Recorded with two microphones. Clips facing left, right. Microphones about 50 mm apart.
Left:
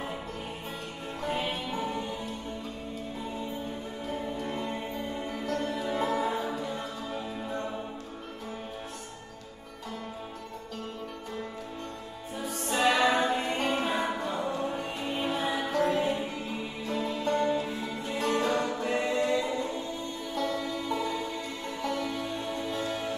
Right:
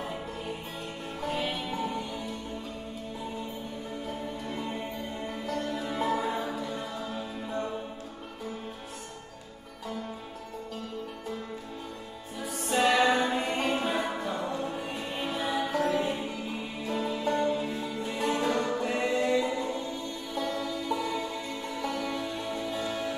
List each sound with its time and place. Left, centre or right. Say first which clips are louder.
1.4 s music: even; centre
4.6 s music: left 1 dB; centre
12.4 s music: right 1 dB; centre
13.0 s music: even; centre
13.6 s music: even; centre
14.3 s music: left 1 dB; centre
15.5 s music: right 1 dB; centre
17.6 s music: right 1 dB; centre
18.0 s music: left 1 dB; centre
19.0 s a sound: right 3 dB; centre
20.6 s music: even; centre